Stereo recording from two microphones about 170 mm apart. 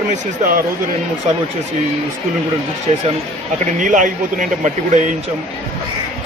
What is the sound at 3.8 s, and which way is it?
Speech, 50° right (ahead or behind).